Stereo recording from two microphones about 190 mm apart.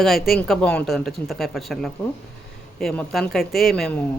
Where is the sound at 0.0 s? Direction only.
Centre (ahead or behind).